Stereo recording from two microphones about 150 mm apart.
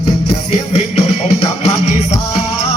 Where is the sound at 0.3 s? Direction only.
45° left (ahead or behind).